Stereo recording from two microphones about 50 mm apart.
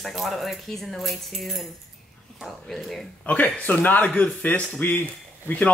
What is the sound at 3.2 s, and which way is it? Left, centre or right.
Speech, left.